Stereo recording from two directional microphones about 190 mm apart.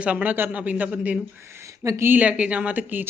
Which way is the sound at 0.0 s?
10° right (ahead or behind).